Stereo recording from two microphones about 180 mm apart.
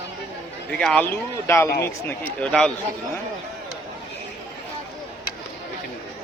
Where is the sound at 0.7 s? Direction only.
5° left (ahead or behind).